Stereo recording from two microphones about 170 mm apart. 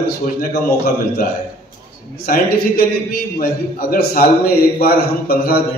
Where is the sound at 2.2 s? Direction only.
60° left (ahead or behind).